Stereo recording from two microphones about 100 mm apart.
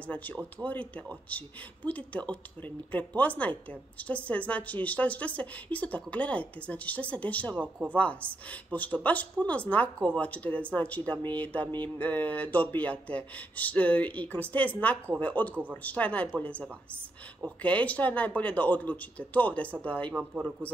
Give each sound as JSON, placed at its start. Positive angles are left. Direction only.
{"t": 0.1, "sound": "a woman's voice", "side_deg": 15}